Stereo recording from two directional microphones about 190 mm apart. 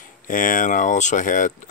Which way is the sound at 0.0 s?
45° left (ahead or behind).